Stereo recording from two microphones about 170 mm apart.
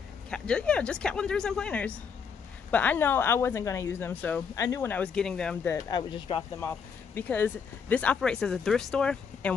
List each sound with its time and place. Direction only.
0.3 s speech: 5° left (ahead or behind)
5.9 s speech: 25° left (ahead or behind)
6.6 s speech: 10° left (ahead or behind)